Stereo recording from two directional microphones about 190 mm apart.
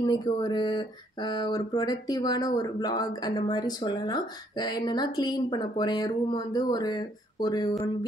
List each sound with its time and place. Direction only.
0.0 s speech: 25° left (ahead or behind)